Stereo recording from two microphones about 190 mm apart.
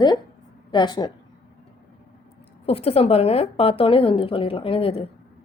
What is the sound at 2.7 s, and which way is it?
A woman's voice, 30° left (ahead or behind).